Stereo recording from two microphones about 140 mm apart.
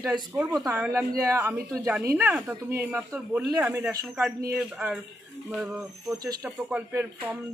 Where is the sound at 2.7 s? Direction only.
15° right (ahead or behind).